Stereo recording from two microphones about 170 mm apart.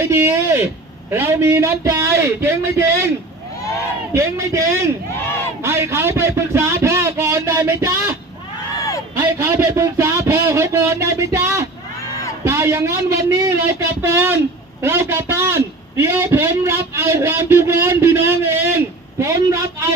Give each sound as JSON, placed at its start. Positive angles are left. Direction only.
{"t": 0.0, "sound": "a man's voice", "side_deg": -15}
{"t": 4.1, "sound": "a man's voice", "side_deg": -15}
{"t": 9.1, "sound": "a sound", "side_deg": -15}
{"t": 12.5, "sound": "a man's voice", "side_deg": -15}